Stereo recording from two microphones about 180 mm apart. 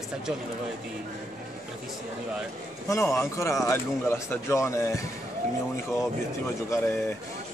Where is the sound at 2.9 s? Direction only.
15° left (ahead or behind).